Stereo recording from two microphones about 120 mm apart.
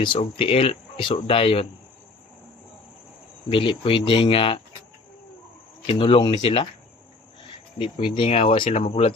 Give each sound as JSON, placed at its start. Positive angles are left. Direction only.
{"t": 0.0, "sound": "speech", "side_deg": 45}
{"t": 3.5, "sound": "speech", "side_deg": 45}
{"t": 5.8, "sound": "speech", "side_deg": 50}
{"t": 8.1, "sound": "speech", "side_deg": 50}